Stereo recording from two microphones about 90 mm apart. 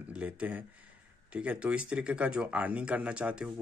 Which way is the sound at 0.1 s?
15° right (ahead or behind).